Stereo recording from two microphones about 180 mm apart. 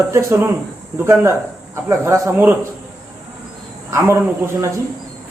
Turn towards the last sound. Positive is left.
turn(degrees=-15)  # may be behind; listen again after turning